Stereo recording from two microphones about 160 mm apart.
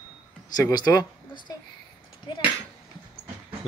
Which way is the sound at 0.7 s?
25° left (ahead or behind).